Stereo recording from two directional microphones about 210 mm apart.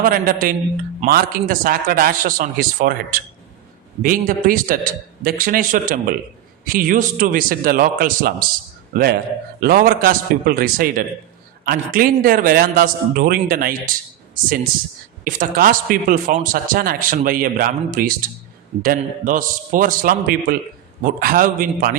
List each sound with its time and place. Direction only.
0.0 s a man's voice: 40° right (ahead or behind)
15.2 s a man's voice: 40° right (ahead or behind)